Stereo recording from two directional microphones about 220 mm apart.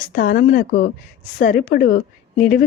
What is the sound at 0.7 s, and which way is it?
Speech, 60° left (ahead or behind).